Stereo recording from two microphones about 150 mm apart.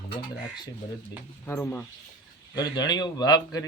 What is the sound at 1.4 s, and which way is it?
Speech, 15° left (ahead or behind).